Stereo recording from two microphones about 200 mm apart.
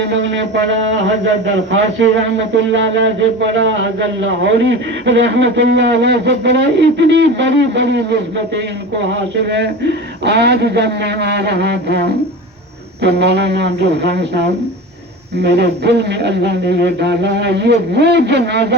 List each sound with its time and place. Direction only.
0.0 s speech: 60° right (ahead or behind)